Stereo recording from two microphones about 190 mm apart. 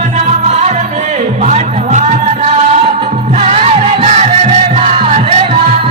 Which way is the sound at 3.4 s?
35° right (ahead or behind).